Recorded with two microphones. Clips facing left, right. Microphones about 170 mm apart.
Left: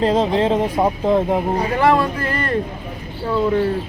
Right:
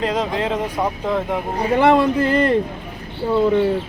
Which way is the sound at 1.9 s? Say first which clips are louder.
Right 3 dB; 25° right (ahead or behind).